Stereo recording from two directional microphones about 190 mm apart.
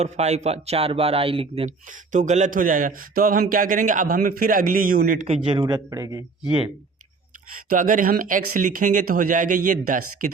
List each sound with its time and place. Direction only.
0.0 s speech: 35° right (ahead or behind)
1.6 s speech: 40° right (ahead or behind)
5.2 s a man's voice: 30° right (ahead or behind)
6.4 s speech: 5° right (ahead or behind)
7.7 s speech: 45° right (ahead or behind)